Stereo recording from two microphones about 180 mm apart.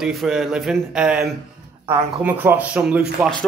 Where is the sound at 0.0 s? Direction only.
Centre (ahead or behind).